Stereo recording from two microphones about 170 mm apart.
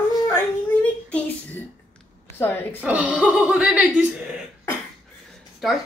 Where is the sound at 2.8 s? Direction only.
10° right (ahead or behind).